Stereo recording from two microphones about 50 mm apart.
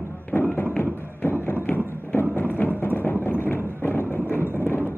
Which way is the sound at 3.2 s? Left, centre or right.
Left.